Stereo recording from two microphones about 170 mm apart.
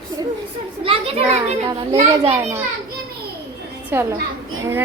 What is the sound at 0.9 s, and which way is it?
A child's voice, 35° right (ahead or behind).